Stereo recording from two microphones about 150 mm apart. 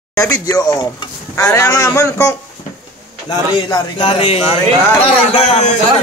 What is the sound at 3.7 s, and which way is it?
A man's voice, 35° left (ahead or behind).